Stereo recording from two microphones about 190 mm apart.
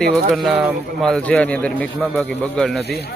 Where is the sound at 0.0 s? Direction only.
Centre (ahead or behind).